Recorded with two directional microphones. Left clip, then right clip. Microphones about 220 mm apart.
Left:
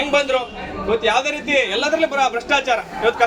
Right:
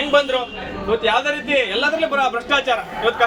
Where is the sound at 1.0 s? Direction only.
Centre (ahead or behind).